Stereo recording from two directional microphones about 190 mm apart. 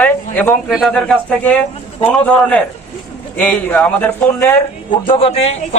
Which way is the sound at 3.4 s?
10° left (ahead or behind).